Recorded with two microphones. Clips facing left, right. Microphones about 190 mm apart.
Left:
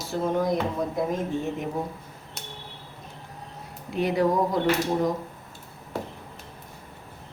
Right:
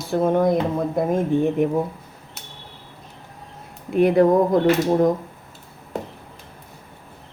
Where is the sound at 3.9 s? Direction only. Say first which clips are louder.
Right 8 dB; 55° right (ahead or behind).